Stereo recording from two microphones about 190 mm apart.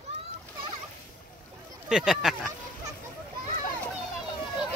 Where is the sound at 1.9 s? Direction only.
5° right (ahead or behind).